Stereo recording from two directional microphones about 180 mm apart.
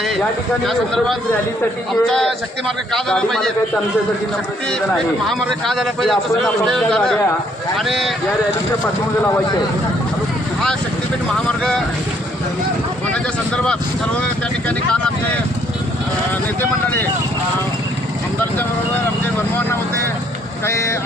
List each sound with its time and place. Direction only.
0.7 s a man's voice: centre (ahead or behind)
5.3 s a man's voice: centre (ahead or behind)
11.4 s speech: 5° left (ahead or behind)
16.6 s speech: 10° left (ahead or behind)
20.7 s speech: 15° left (ahead or behind)